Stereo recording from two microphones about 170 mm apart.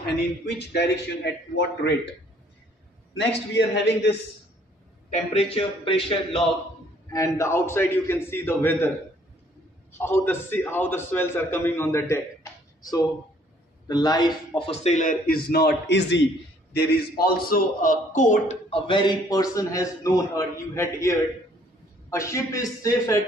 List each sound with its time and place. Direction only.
0.6 s a man's voice: 85° left
3.2 s a man's voice: 90° left
5.1 s a man's voice: 35° left (ahead or behind)
7.1 s a man's voice: 20° left (ahead or behind)
9.9 s a man's voice: 15° left (ahead or behind)
14.7 s speech: 40° left (ahead or behind); by 16.3 s 90° left
16.7 s a man's voice: 65° left (ahead or behind); by 18.6 s 45° left (ahead or behind)
18.7 s a man's voice: 30° left (ahead or behind)